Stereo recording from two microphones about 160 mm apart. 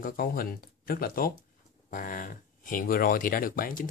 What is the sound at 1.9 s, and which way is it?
Speech, 55° left (ahead or behind).